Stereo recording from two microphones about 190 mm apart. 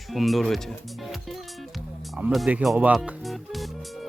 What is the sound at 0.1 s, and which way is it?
Speech, centre (ahead or behind).